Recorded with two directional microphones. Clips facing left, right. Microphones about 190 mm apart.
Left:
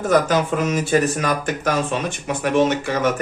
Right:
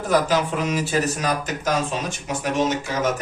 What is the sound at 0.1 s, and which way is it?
Speech, 50° left (ahead or behind).